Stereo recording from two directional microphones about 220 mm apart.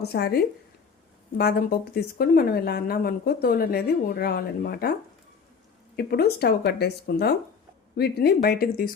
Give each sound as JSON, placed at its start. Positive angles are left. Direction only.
{"t": 0.0, "sound": "speech", "side_deg": 45}
{"t": 6.0, "sound": "speech", "side_deg": 45}